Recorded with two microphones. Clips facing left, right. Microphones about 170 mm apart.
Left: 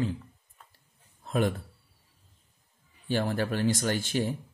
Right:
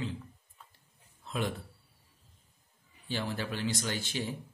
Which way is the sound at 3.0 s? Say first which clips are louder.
Left 7 dB; 50° left (ahead or behind).